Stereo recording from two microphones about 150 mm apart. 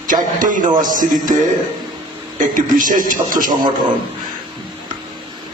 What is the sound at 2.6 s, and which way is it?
Speech, 60° right (ahead or behind).